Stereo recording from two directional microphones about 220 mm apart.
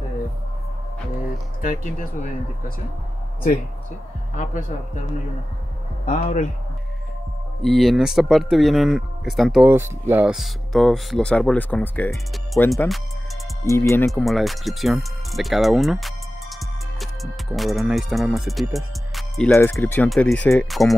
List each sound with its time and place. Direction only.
1.6 s speech: 40° left (ahead or behind)
6.0 s speech: 35° left (ahead or behind)
7.6 s speech: centre (ahead or behind)
13.7 s speech: 10° left (ahead or behind)
14.2 s speech: centre (ahead or behind)
19.5 s speech: 10° left (ahead or behind)